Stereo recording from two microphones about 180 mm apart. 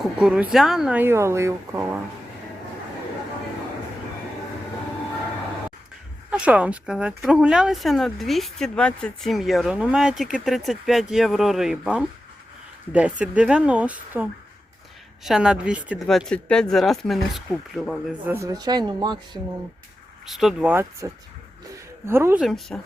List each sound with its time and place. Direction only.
0.2 s speech: 5° right (ahead or behind)
6.3 s speech: 5° right (ahead or behind)
18.3 s speech: 15° right (ahead or behind)
20.2 s speech: centre (ahead or behind)
22.4 s speech: centre (ahead or behind)